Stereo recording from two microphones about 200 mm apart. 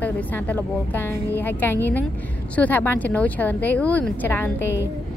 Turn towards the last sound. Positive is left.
turn(degrees=10)  # may be behind; listen again after turning